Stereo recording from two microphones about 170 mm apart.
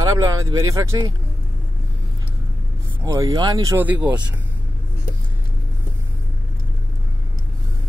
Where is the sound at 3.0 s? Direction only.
20° right (ahead or behind).